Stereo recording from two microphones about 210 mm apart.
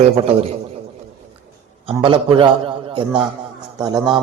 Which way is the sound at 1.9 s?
25° right (ahead or behind).